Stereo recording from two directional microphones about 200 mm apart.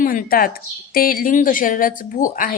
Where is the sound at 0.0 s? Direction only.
45° left (ahead or behind).